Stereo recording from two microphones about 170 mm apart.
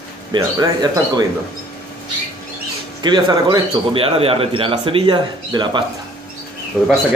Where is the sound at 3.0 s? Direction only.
25° right (ahead or behind).